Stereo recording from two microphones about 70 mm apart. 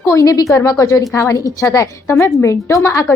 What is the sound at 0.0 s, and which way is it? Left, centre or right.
A woman's voice, left.